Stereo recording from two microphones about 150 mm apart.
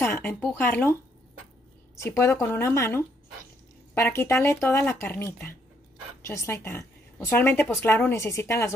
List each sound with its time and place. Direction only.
0.0 s a sound: 15° left (ahead or behind)
0.4 s a woman's voice: 10° left (ahead or behind)
2.0 s a woman's voice: 15° left (ahead or behind)